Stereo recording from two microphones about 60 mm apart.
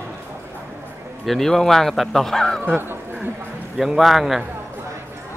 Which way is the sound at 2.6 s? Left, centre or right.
Right.